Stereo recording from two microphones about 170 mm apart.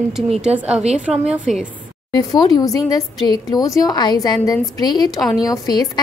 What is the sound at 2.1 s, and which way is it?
Speech, 25° left (ahead or behind).